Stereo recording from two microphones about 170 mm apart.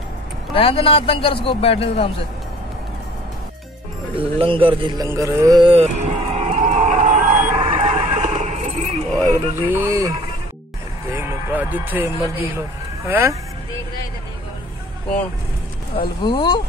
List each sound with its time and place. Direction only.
0.6 s a man's voice: 35° left (ahead or behind)
4.2 s speech: 30° right (ahead or behind)
5.0 s a sound: 15° right (ahead or behind); by 9.0 s 45° right (ahead or behind)
9.3 s speech: 15° right (ahead or behind)
11.1 s speech: 10° right (ahead or behind)
16.0 s speech: 25° left (ahead or behind)